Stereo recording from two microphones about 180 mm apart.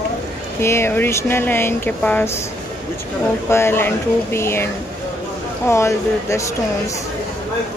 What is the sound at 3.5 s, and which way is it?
Speech, 15° left (ahead or behind).